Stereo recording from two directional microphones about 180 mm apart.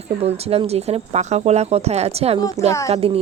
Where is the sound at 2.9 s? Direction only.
30° right (ahead or behind).